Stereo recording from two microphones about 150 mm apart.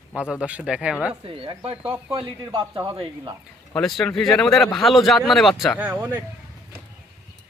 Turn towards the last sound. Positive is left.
turn(degrees=-15)  # may be behind; listen again after turning